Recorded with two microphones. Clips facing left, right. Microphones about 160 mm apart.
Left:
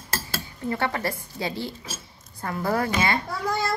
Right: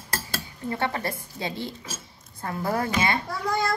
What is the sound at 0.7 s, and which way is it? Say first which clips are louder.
Speech: left 1 dB; 20° right (ahead or behind).